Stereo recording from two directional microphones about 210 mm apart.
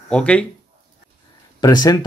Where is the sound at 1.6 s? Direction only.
20° left (ahead or behind).